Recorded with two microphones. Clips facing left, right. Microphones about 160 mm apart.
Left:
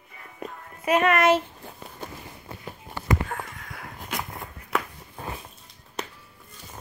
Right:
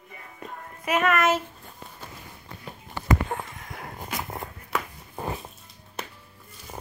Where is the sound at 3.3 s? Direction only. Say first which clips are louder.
Right 2 dB; 25° right (ahead or behind).